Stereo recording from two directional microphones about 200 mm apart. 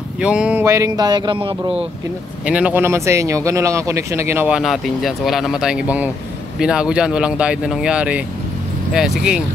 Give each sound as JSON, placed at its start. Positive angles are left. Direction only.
{"t": 0.2, "sound": "speech", "side_deg": -5}
{"t": 2.4, "sound": "speech", "side_deg": -5}